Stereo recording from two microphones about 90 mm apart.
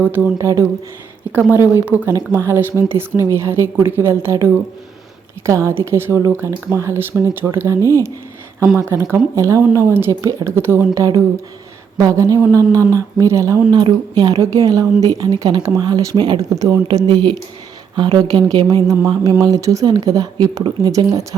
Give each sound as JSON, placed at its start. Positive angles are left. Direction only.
{"t": 0.0, "sound": "a woman's voice", "side_deg": -20}
{"t": 0.3, "sound": "speech", "side_deg": -35}
{"t": 1.3, "sound": "a woman's voice", "side_deg": -20}
{"t": 13.7, "sound": "a woman's voice", "side_deg": -50}
{"t": 16.1, "sound": "speech", "side_deg": -60}
{"t": 16.4, "sound": "speech", "side_deg": -35}
{"t": 16.9, "sound": "a woman's voice", "side_deg": -50}